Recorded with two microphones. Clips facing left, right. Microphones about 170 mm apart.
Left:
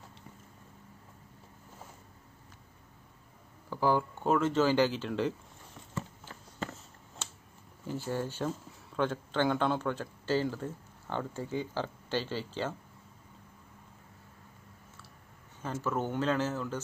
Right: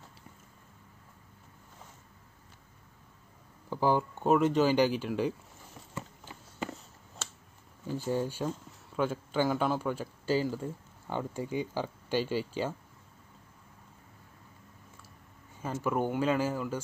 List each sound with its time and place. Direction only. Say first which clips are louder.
3.7 s speech: right 1 dB; 15° right (ahead or behind)
7.9 s speech: right 3 dB; 15° right (ahead or behind)
15.6 s speech: right 3 dB; 10° right (ahead or behind)